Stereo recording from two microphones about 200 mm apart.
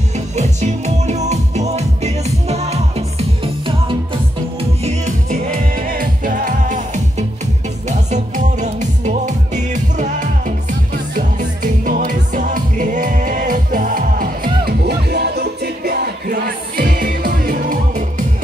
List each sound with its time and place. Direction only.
0.4 s music: 35° right (ahead or behind)